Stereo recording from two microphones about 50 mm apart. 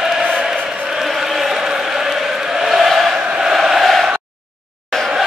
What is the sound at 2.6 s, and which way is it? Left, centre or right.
Chant, centre.